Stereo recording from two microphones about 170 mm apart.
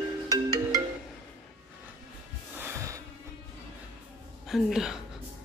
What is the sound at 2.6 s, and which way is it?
Music, 15° right (ahead or behind).